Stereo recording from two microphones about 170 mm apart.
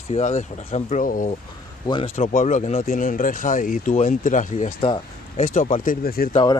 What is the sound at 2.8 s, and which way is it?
Speech, 50° left (ahead or behind).